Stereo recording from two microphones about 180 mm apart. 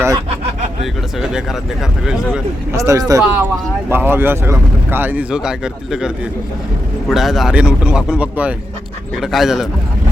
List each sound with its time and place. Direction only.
1.2 s speech: 5° right (ahead or behind)
2.7 s speech: 15° right (ahead or behind); by 9.6 s centre (ahead or behind)